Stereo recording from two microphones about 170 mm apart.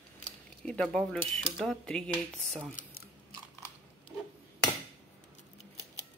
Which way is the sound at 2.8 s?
50° left (ahead or behind).